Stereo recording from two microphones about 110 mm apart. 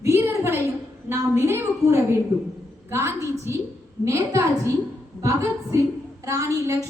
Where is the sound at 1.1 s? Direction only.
20° right (ahead or behind).